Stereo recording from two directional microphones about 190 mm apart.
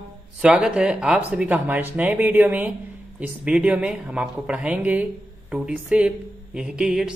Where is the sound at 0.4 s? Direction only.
5° right (ahead or behind).